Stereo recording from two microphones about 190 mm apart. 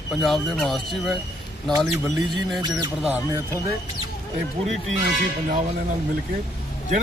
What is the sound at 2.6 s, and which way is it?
Speech, 25° right (ahead or behind).